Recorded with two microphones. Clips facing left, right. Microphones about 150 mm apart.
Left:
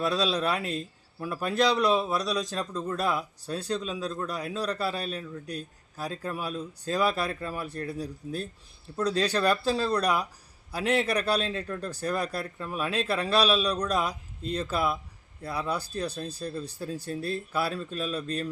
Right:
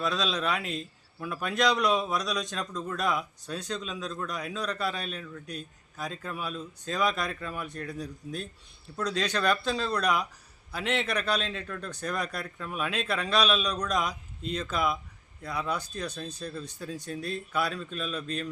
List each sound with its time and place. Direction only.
0.1 s a man's voice: 35° left (ahead or behind)